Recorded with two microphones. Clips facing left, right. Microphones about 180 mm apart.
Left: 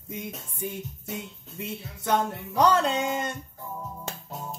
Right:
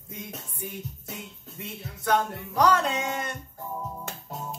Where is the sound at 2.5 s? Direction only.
30° left (ahead or behind).